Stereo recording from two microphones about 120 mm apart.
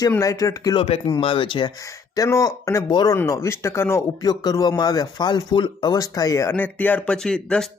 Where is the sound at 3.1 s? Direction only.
25° left (ahead or behind).